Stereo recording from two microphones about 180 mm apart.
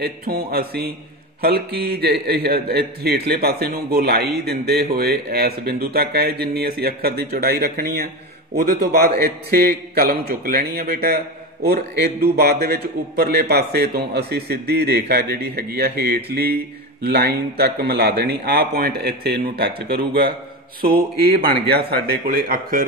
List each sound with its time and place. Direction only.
0.0 s a man's voice: 60° right (ahead or behind)